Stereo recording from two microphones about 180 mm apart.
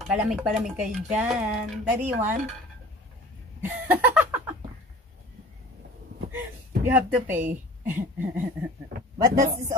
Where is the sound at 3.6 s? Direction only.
10° right (ahead or behind).